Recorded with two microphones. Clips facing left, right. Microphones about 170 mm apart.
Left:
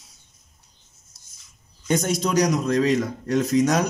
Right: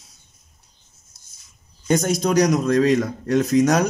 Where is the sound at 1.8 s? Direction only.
45° right (ahead or behind); by 3.8 s 60° right (ahead or behind).